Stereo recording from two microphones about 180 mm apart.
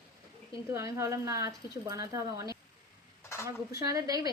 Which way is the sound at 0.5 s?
15° right (ahead or behind).